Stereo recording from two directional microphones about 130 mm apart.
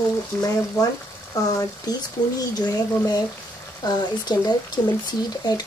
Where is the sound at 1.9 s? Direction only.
30° left (ahead or behind).